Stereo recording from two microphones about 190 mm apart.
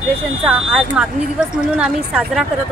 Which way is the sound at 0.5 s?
5° right (ahead or behind).